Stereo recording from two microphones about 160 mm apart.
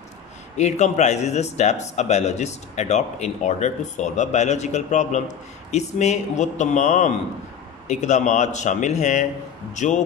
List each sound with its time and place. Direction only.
0.6 s a man's voice: 45° left (ahead or behind)